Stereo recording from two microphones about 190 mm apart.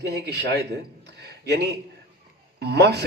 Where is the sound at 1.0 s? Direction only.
60° right (ahead or behind).